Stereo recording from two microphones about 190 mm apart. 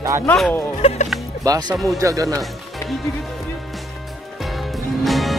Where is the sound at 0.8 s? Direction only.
35° left (ahead or behind).